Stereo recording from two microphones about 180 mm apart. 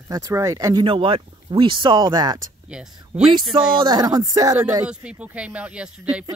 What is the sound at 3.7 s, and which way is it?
Speech, 25° right (ahead or behind).